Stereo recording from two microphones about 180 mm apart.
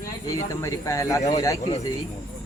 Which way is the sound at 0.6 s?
15° left (ahead or behind).